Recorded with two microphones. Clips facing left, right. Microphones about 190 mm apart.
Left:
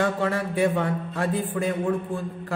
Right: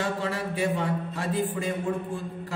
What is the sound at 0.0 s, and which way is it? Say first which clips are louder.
A man's voice: left 5 dB; 55° left (ahead or behind).